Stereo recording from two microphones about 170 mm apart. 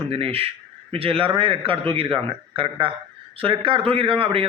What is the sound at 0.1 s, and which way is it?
A man's voice, 35° right (ahead or behind).